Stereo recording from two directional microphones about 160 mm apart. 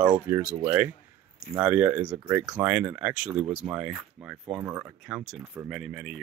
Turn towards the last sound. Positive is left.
turn(degrees=0)  # may be behind; listen again after turning